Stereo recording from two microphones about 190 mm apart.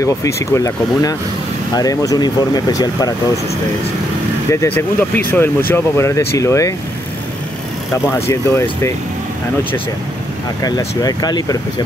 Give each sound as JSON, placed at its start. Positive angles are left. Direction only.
{"t": 0.0, "sound": "speech", "side_deg": 15}
{"t": 4.5, "sound": "speech", "side_deg": 10}
{"t": 8.1, "sound": "speech", "side_deg": 10}
{"t": 10.6, "sound": "speech", "side_deg": 20}